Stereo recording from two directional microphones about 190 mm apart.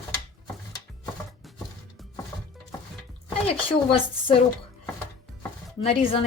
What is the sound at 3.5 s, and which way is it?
Speech, 30° left (ahead or behind).